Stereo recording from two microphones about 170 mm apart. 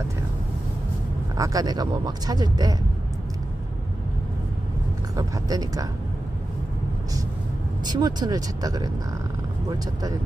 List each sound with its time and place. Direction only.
1.3 s speech: 20° right (ahead or behind)
5.1 s speech: 20° right (ahead or behind)
7.8 s speech: 25° right (ahead or behind)